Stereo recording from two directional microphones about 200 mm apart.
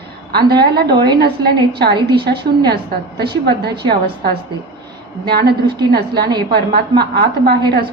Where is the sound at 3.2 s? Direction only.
55° right (ahead or behind).